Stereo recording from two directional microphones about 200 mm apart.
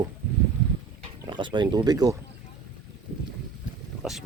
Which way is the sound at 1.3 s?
25° right (ahead or behind).